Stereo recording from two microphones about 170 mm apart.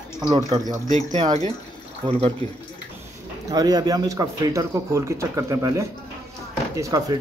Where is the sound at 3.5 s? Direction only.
25° right (ahead or behind).